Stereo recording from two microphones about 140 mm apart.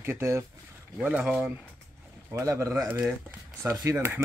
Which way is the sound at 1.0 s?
10° right (ahead or behind).